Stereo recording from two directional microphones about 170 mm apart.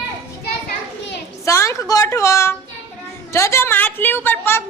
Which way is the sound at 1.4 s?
20° left (ahead or behind).